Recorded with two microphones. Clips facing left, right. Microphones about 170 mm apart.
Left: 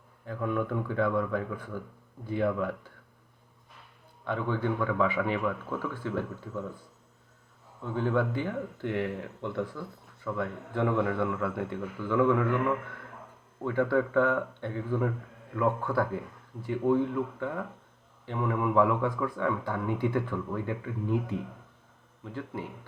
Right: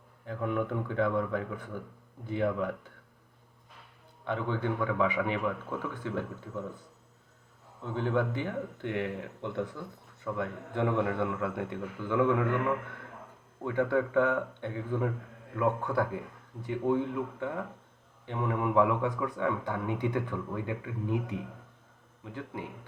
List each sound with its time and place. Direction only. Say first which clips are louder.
0.3 s speech: left 1 dB; 20° right (ahead or behind)
4.3 s speech: left 2 dB; 20° right (ahead or behind)
7.9 s speech: left 2 dB; 20° right (ahead or behind)